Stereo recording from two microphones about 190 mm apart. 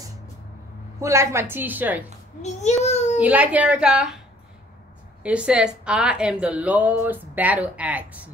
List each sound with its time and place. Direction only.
1.0 s speech: 15° right (ahead or behind)
2.4 s a child's voice: 35° left (ahead or behind)
3.2 s speech: 5° right (ahead or behind)
5.2 s speech: 5° right (ahead or behind)